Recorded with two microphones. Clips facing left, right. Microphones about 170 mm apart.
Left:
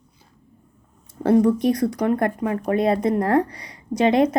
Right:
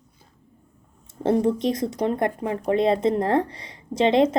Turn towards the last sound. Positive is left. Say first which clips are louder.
# left 1 dB
turn(degrees=-25)  # may be behind; listen again after turning